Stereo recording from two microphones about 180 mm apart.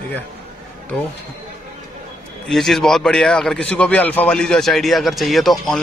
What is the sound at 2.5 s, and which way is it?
A man's voice, centre (ahead or behind).